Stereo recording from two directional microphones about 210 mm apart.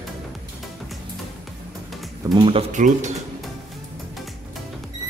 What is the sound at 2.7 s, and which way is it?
Speech, 35° right (ahead or behind).